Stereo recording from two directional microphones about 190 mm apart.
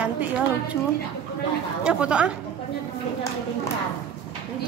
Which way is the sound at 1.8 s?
5° right (ahead or behind).